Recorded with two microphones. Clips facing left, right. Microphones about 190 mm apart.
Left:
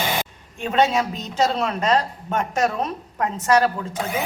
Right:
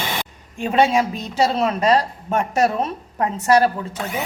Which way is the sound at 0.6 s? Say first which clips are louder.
Right 2 dB; 10° right (ahead or behind).